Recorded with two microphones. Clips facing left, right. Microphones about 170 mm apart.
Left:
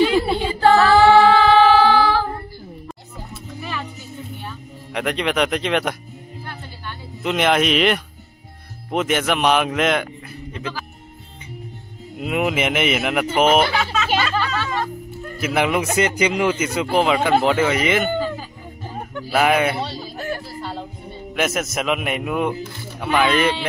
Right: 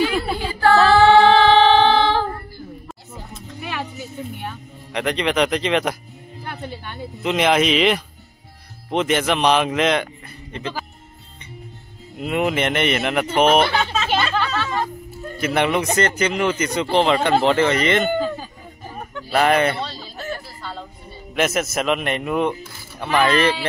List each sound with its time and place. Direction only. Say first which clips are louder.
0.0 s a sound: left 4 dB; 25° left (ahead or behind)
1.1 s music: even; 30° right (ahead or behind)
4.9 s speech: right 1 dB; centre (ahead or behind)
7.2 s speech: right 1 dB; centre (ahead or behind)
12.2 s speech: even; 5° left (ahead or behind)
14.0 s music: even; 10° left (ahead or behind)
15.3 s speech: even; 5° left (ahead or behind)
19.1 s a sound: even; 5° left (ahead or behind)
21.4 s speech: right 2 dB; centre (ahead or behind)